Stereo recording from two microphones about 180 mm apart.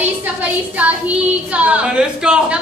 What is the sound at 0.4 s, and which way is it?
A woman's voice, 10° right (ahead or behind).